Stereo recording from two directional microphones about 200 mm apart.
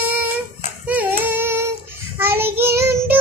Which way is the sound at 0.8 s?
10° right (ahead or behind).